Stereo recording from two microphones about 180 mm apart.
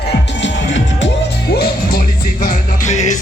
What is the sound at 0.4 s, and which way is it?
Music, 85° left.